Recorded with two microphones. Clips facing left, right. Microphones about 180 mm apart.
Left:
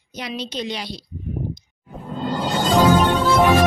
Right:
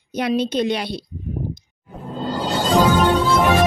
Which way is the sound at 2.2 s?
35° right (ahead or behind).